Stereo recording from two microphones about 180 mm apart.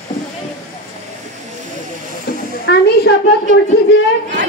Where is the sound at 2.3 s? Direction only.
60° left (ahead or behind).